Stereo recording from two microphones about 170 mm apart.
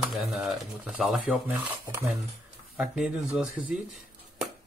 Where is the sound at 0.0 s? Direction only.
Centre (ahead or behind).